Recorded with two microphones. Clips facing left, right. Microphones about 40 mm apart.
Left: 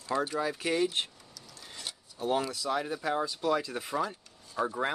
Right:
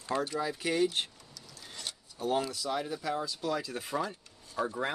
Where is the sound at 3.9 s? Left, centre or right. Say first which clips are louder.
Left 1 dB; centre.